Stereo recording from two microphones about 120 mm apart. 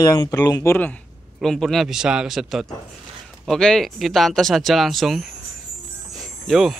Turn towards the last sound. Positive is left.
turn(degrees=0)  # may be behind; listen again after turning